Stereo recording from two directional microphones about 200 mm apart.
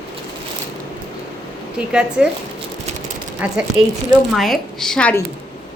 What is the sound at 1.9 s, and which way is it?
Speech, 5° right (ahead or behind).